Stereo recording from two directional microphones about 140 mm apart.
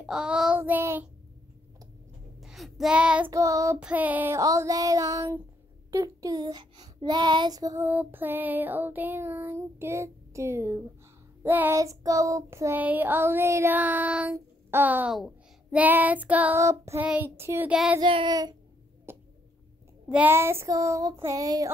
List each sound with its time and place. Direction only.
0.0 s child singing: 5° right (ahead or behind)
2.4 s child singing: centre (ahead or behind)
3.3 s speech: 20° right (ahead or behind)
3.8 s child singing: 10° right (ahead or behind)
4.4 s a child's voice: 25° right (ahead or behind)
7.8 s child singing: 15° right (ahead or behind)
14.3 s speech: 15° right (ahead or behind)
15.1 s child singing: 5° right (ahead or behind)
16.6 s speech: 20° right (ahead or behind)
17.1 s child singing: 15° right (ahead or behind)
18.0 s child singing: 35° right (ahead or behind)
19.1 s a sound: 15° right (ahead or behind)
20.1 s speech: 15° right (ahead or behind)